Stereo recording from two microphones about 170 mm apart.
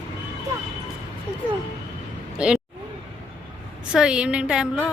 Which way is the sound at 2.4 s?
5° right (ahead or behind).